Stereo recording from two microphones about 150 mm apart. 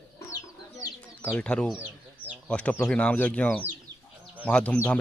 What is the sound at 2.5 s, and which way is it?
Speech, 10° left (ahead or behind).